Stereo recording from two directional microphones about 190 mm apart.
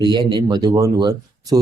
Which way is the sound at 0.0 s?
25° right (ahead or behind).